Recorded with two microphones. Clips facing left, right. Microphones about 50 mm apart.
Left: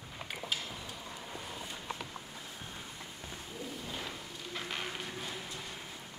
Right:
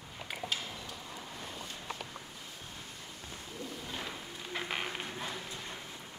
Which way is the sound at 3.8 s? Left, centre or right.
Centre.